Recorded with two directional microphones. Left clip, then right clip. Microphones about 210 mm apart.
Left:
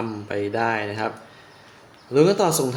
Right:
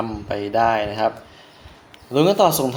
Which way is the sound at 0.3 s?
15° right (ahead or behind).